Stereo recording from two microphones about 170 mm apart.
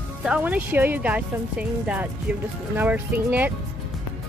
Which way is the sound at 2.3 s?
10° right (ahead or behind).